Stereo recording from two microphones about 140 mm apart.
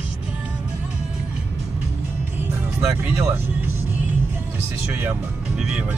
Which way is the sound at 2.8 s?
10° right (ahead or behind).